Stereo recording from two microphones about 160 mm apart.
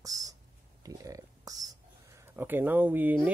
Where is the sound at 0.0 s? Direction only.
20° right (ahead or behind).